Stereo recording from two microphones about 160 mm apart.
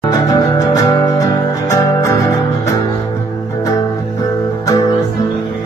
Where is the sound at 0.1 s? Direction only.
25° left (ahead or behind).